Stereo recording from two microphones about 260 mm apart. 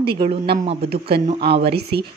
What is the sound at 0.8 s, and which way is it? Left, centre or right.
Speech, right.